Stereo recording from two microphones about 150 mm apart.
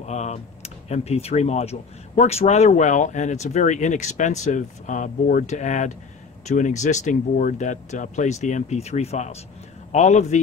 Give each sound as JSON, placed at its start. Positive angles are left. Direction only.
{"t": 0.0, "sound": "speech", "side_deg": 50}